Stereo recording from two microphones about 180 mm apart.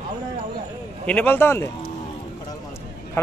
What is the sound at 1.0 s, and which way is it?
Speech, 10° left (ahead or behind).